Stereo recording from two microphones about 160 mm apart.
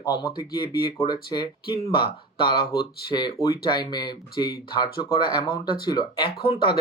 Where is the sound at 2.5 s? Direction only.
80° left.